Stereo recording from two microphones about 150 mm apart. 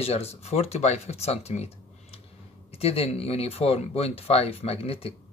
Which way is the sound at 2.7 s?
40° left (ahead or behind).